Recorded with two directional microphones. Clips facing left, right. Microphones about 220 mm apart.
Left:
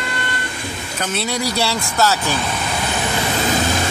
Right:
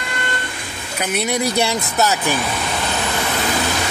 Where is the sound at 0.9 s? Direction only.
15° right (ahead or behind).